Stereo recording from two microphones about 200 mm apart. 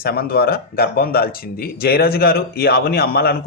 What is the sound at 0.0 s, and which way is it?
Speech, 50° left (ahead or behind).